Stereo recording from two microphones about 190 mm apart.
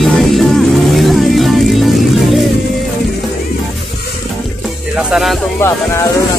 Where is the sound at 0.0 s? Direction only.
Centre (ahead or behind).